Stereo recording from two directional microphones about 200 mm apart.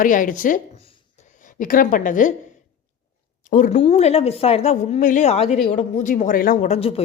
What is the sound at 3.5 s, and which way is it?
Speech, 40° left (ahead or behind).